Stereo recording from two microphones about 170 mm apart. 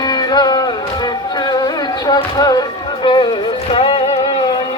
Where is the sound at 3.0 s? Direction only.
25° left (ahead or behind).